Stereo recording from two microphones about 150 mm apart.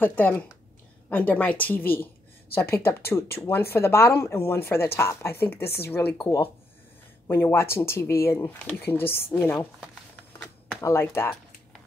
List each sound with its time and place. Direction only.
0.0 s speech: 10° left (ahead or behind)
7.2 s speech: 15° left (ahead or behind)
10.8 s speech: 15° left (ahead or behind)